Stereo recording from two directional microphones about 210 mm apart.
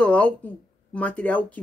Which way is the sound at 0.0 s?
5° left (ahead or behind).